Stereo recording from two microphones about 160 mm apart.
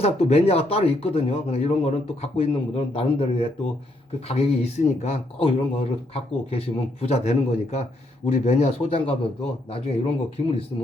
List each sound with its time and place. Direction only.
0.0 s speech: 40° left (ahead or behind)